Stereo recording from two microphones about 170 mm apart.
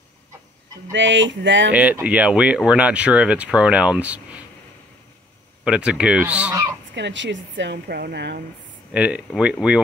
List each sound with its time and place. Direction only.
0.9 s speech: 90° right
1.7 s speech: 10° right (ahead or behind)
5.6 s speech: 5° right (ahead or behind)
7.0 s speech: 90° right
8.9 s speech: 5° right (ahead or behind)